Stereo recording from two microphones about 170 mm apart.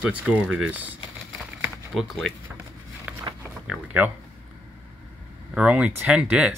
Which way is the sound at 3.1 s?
10° right (ahead or behind).